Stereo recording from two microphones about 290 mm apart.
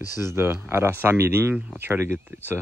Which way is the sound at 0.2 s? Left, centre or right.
Centre.